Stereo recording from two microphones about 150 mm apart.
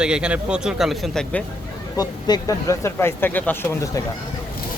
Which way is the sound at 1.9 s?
25° left (ahead or behind).